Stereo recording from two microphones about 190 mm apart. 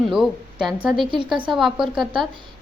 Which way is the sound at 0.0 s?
Centre (ahead or behind).